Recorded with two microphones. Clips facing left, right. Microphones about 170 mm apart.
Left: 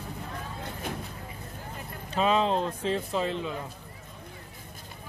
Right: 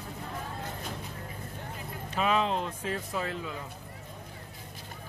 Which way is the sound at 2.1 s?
30° left (ahead or behind).